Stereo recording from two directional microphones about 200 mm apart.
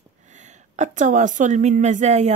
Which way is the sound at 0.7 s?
35° right (ahead or behind).